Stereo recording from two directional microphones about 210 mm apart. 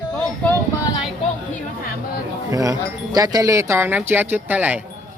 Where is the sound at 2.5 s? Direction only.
15° right (ahead or behind).